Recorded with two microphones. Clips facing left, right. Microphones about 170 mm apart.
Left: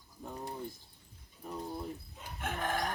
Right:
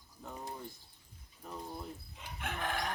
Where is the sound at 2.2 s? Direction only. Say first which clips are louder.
Left 2 dB; 45° left (ahead or behind).